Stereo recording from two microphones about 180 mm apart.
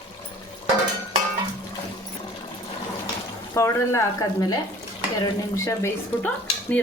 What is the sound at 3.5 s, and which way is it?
Speech, 15° left (ahead or behind).